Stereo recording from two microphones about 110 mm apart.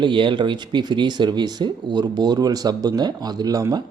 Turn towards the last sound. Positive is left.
turn(degrees=-35)  # may be behind; listen again after turning